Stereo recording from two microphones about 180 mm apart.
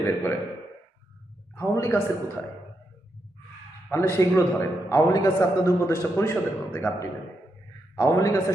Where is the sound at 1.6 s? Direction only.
15° left (ahead or behind).